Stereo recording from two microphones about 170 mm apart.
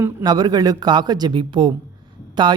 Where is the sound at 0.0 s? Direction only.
20° right (ahead or behind).